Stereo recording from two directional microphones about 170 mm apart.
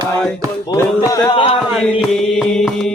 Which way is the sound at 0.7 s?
25° left (ahead or behind).